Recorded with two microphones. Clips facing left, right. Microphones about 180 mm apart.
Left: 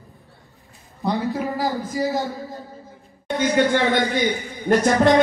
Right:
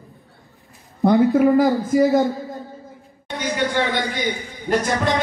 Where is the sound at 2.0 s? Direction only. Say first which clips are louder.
Right 6 dB; centre (ahead or behind).